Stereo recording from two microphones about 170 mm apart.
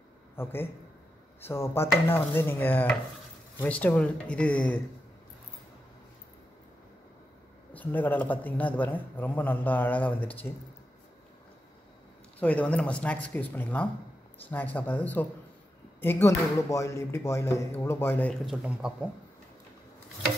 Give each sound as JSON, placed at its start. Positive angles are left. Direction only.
{"t": 0.4, "sound": "speech", "side_deg": 15}
{"t": 7.7, "sound": "speech", "side_deg": 10}
{"t": 12.4, "sound": "speech", "side_deg": 10}